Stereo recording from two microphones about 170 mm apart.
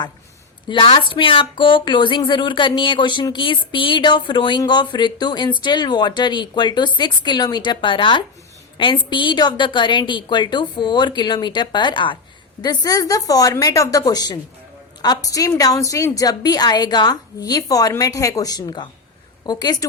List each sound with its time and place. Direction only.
0.7 s speech: 30° left (ahead or behind)